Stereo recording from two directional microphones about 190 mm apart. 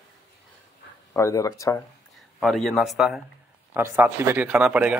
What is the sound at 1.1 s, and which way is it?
Speech, 15° left (ahead or behind).